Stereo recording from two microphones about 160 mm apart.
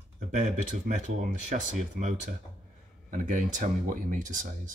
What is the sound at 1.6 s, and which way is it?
Speech, 50° right (ahead or behind).